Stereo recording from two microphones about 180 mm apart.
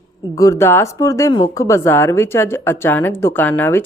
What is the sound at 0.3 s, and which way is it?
Speech, 20° left (ahead or behind).